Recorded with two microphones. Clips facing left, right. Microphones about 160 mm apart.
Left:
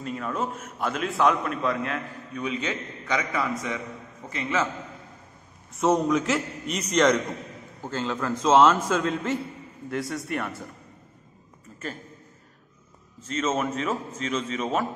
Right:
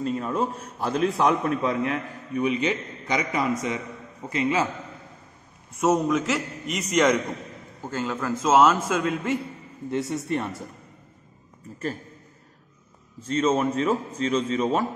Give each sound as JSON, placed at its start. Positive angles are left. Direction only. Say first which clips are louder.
{"t": 0.0, "sound": "a man's voice", "louder": "right 4 dB", "side_deg": -30}
{"t": 5.8, "sound": "a man's voice", "louder": "even", "side_deg": -5}
{"t": 9.8, "sound": "a man's voice", "louder": "right 3 dB", "side_deg": -25}
{"t": 13.2, "sound": "a man's voice", "louder": "right 4 dB", "side_deg": -35}